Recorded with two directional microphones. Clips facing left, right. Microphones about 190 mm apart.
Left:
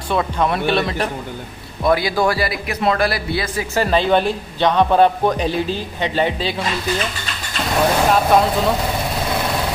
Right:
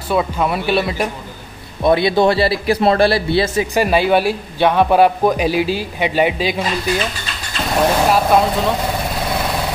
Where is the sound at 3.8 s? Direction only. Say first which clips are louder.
Right 1 dB; 10° right (ahead or behind).